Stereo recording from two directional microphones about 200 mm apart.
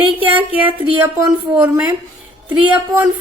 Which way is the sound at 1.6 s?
20° right (ahead or behind).